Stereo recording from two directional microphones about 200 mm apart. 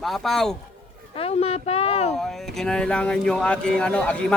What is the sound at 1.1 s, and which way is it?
Speech, 30° left (ahead or behind).